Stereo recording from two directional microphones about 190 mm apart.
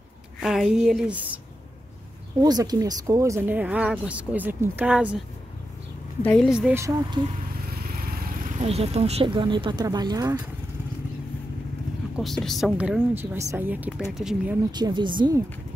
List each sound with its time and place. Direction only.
0.4 s a woman's voice: centre (ahead or behind)
2.4 s speech: 20° right (ahead or behind); by 5.2 s 5° right (ahead or behind)
6.2 s a woman's voice: centre (ahead or behind)
6.8 s speech: 20° right (ahead or behind)
8.0 s vehicle: 50° right (ahead or behind)
8.6 s speech: 30° right (ahead or behind)
12.2 s speech: centre (ahead or behind)
14.7 s speech: 25° right (ahead or behind)